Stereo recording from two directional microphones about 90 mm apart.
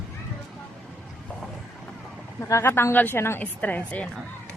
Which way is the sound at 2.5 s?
25° left (ahead or behind).